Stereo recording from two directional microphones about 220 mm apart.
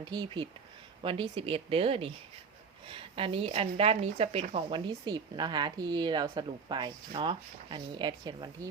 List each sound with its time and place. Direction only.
0.0 s speech: 20° right (ahead or behind)